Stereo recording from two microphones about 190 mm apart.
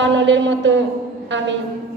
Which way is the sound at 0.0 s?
70° right (ahead or behind).